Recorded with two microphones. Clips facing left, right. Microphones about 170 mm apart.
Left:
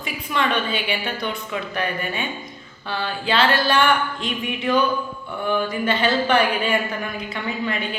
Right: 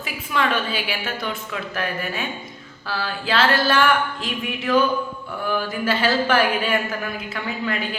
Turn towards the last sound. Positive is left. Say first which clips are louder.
# even
turn(degrees=0)  # may be behind; listen again after turning